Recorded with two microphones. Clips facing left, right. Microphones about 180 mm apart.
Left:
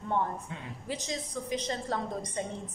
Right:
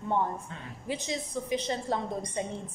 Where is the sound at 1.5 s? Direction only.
20° right (ahead or behind).